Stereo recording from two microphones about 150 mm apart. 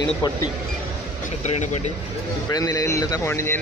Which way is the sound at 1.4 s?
50° left (ahead or behind).